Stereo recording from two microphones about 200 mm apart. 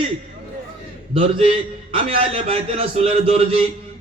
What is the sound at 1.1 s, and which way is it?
A man's voice, 30° right (ahead or behind).